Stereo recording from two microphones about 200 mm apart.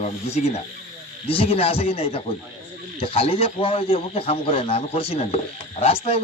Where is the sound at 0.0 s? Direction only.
35° left (ahead or behind).